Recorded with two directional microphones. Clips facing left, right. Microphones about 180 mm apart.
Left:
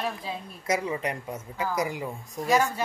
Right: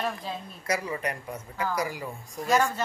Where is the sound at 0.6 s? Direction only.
20° left (ahead or behind).